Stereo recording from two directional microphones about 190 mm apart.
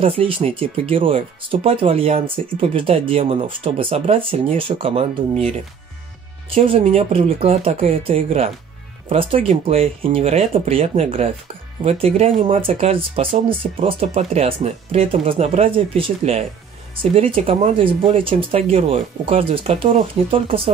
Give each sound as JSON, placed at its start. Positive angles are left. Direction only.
{"t": 0.0, "sound": "speech", "side_deg": -30}
{"t": 6.5, "sound": "speech", "side_deg": -30}